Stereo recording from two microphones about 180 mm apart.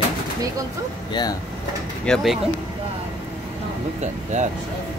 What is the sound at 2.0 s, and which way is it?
Speech, centre (ahead or behind).